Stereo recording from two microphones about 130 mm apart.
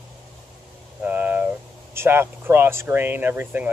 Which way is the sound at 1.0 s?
15° right (ahead or behind).